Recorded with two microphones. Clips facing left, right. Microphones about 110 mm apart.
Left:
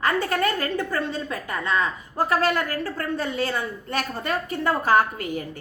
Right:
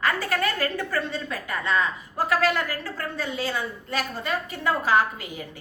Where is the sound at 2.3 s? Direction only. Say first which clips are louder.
Even; 40° left (ahead or behind).